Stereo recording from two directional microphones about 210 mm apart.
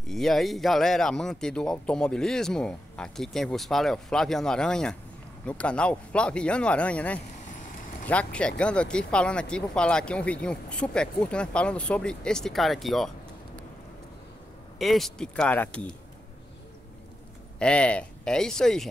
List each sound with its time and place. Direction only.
0.0 s speech: centre (ahead or behind)
7.4 s vehicle: 35° left (ahead or behind)
8.1 s speech: 5° left (ahead or behind)
14.8 s speech: centre (ahead or behind)
17.6 s speech: 5° left (ahead or behind)